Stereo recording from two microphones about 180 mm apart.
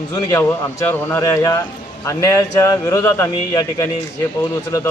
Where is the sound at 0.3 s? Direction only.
15° left (ahead or behind).